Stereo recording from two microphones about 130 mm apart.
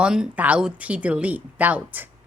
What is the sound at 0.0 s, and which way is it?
A woman's voice, 5° right (ahead or behind).